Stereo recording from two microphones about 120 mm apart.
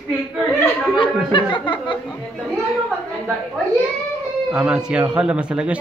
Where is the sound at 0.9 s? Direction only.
45° left (ahead or behind).